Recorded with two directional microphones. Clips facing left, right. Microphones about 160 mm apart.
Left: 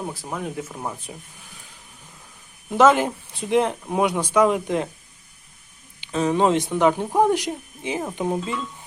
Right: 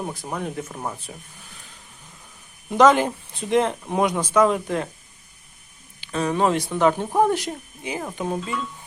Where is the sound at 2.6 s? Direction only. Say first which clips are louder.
Even; 5° left (ahead or behind).